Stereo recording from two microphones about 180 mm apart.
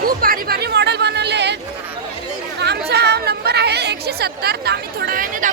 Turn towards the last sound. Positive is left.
turn(degrees=-50)  # may be behind; listen again after turning